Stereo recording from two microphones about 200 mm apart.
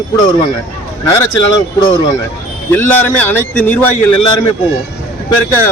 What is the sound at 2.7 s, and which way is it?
Speech, 10° left (ahead or behind).